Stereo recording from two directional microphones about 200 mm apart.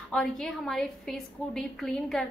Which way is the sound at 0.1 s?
Centre (ahead or behind).